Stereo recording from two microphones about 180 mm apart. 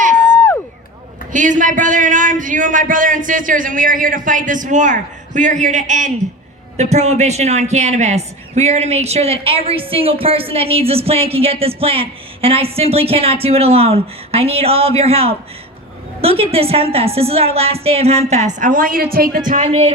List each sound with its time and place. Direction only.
0.3 s a sound: 15° left (ahead or behind)
1.3 s a man's voice: 45° right (ahead or behind)
19.6 s a man's voice: 35° right (ahead or behind)